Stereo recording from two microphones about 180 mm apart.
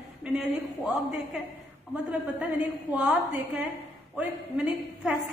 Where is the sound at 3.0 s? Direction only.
10° right (ahead or behind).